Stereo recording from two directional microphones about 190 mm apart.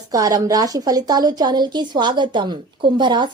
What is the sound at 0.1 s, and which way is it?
A woman's voice, 20° right (ahead or behind).